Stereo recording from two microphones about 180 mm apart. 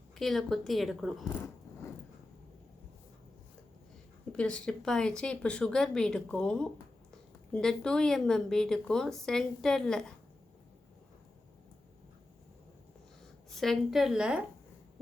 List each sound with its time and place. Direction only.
0.2 s a woman's voice: centre (ahead or behind)
1.3 s a sound: 15° left (ahead or behind)
4.3 s a woman's voice: 5° left (ahead or behind)
13.6 s a woman's voice: centre (ahead or behind)